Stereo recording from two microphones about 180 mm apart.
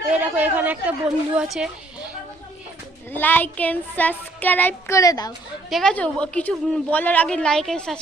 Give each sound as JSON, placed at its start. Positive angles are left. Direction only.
{"t": 0.1, "sound": "speech", "side_deg": -10}
{"t": 3.1, "sound": "speech", "side_deg": 10}
{"t": 5.6, "sound": "a woman's voice", "side_deg": 0}